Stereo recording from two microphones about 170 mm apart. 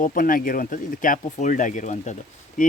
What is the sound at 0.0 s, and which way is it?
Speech, 55° left (ahead or behind).